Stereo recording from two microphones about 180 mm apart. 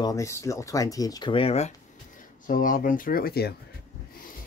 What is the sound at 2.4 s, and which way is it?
Speech, 50° left (ahead or behind).